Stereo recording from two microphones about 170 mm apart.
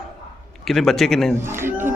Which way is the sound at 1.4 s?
15° right (ahead or behind).